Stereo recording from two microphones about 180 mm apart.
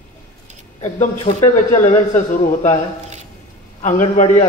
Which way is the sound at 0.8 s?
35° left (ahead or behind).